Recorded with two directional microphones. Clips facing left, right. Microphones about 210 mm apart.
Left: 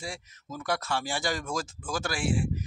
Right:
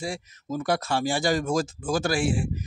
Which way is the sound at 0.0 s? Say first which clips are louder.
Right 7 dB; 35° right (ahead or behind).